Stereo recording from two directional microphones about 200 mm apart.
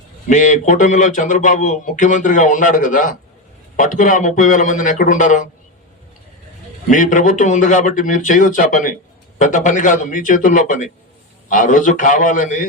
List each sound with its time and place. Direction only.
0.3 s a man's voice: 40° left (ahead or behind)
6.8 s a man's voice: 40° left (ahead or behind)